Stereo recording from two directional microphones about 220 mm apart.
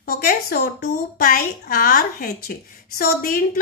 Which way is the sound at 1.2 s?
40° left (ahead or behind).